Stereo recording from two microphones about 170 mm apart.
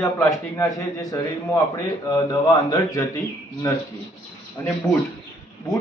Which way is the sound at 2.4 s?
20° left (ahead or behind).